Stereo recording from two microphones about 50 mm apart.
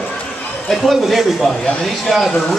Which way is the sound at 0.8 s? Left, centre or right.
Centre.